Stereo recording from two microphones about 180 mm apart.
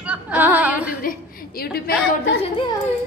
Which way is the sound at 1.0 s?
55° left (ahead or behind).